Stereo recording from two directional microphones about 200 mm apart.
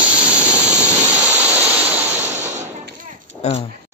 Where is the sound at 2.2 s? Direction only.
35° right (ahead or behind).